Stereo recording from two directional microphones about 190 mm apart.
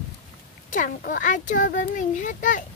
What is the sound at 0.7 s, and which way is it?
Speech, 45° left (ahead or behind).